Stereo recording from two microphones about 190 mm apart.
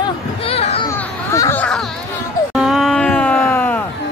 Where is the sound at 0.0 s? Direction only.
30° left (ahead or behind).